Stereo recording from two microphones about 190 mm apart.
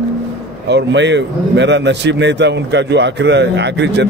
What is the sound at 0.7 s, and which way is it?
A man's voice, 65° right (ahead or behind).